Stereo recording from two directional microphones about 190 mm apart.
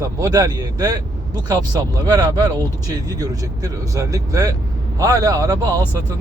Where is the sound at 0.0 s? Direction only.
20° right (ahead or behind).